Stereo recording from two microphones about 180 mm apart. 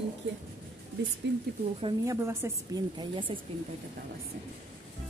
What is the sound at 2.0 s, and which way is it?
Speech, 15° right (ahead or behind).